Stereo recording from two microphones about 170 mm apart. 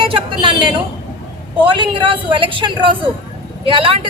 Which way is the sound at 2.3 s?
30° right (ahead or behind).